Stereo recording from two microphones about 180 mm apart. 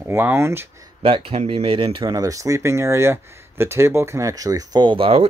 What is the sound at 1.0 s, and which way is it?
Speech, 30° right (ahead or behind).